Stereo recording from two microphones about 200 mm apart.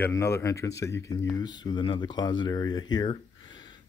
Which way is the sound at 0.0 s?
15° left (ahead or behind).